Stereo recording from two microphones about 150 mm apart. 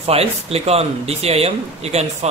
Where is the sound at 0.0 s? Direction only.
40° right (ahead or behind).